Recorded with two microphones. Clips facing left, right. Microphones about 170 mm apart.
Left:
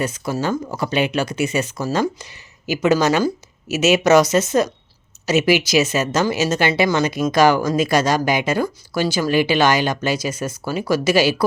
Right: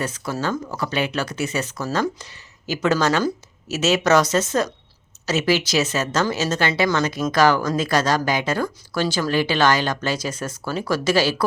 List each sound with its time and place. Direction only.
0.0 s speech: 15° left (ahead or behind)